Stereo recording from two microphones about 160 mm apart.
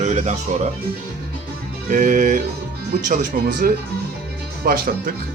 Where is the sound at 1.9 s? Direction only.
55° right (ahead or behind).